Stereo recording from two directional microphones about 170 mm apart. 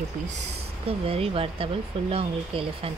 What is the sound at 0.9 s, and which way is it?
Speech, 35° right (ahead or behind).